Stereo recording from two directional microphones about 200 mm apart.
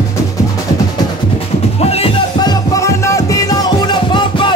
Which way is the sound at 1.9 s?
25° left (ahead or behind).